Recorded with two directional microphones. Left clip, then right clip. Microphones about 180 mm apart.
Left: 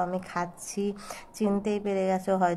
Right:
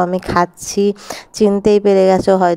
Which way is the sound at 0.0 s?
45° right (ahead or behind).